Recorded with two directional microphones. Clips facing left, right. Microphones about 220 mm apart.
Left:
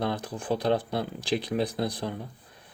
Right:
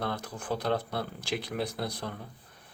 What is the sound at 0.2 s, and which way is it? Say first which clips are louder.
Speech: left 5 dB; 30° left (ahead or behind).